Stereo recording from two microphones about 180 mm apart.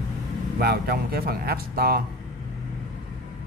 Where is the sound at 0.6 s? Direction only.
60° right (ahead or behind).